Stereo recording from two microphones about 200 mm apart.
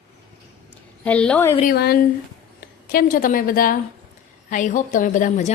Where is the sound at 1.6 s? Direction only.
50° left (ahead or behind).